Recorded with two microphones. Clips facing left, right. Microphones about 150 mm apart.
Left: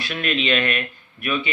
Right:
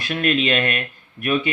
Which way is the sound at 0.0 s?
45° right (ahead or behind).